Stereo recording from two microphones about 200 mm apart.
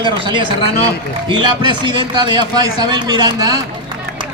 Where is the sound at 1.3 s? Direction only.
25° right (ahead or behind).